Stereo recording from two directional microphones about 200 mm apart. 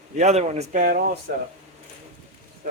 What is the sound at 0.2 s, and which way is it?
Speech, 35° right (ahead or behind).